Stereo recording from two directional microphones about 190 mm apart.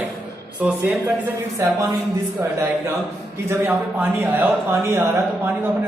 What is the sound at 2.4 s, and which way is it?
A man's voice, 15° right (ahead or behind).